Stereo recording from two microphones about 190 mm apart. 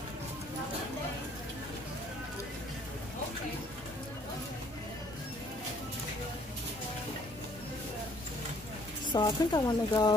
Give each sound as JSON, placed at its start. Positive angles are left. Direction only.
{"t": 9.1, "sound": "speech", "side_deg": 20}